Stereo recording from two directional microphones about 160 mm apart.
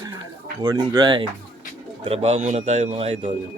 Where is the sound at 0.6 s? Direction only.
30° right (ahead or behind).